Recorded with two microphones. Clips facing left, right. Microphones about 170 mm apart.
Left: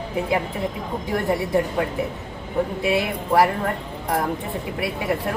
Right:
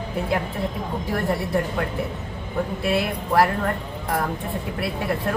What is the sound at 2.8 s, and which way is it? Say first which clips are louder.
Speech: left 1 dB; 15° left (ahead or behind).